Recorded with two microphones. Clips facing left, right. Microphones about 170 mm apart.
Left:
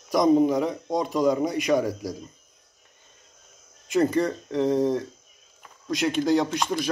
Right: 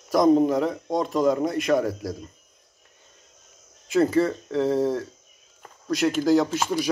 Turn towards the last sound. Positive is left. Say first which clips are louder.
# right 2 dB
turn(degrees=-5)  # may be behind; listen again after turning